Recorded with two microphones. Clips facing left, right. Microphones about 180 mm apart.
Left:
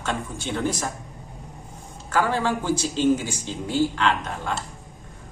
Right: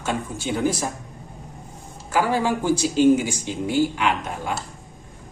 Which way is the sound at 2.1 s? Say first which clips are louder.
Right 2 dB; 10° right (ahead or behind).